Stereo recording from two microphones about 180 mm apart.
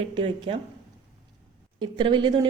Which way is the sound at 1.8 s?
25° right (ahead or behind).